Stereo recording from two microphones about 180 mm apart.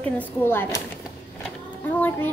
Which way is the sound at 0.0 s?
10° left (ahead or behind).